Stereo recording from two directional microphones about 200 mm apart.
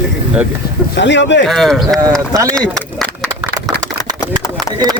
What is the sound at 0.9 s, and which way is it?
Speech, 65° left (ahead or behind).